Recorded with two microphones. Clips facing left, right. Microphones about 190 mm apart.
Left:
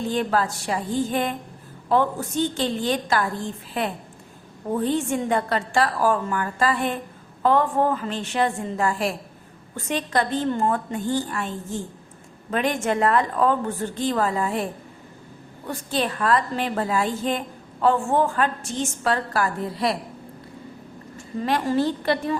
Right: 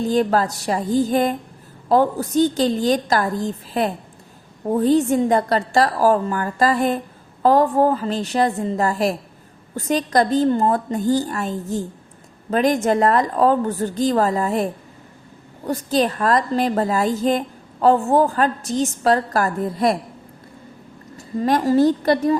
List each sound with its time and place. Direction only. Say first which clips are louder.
0.1 s a woman's voice: right 4 dB; 40° right (ahead or behind)
21.2 s a woman's voice: right 5 dB; 40° right (ahead or behind)